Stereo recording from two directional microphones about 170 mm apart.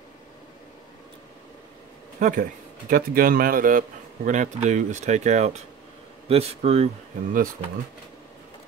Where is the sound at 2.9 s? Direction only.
55° right (ahead or behind); by 6.9 s 40° right (ahead or behind).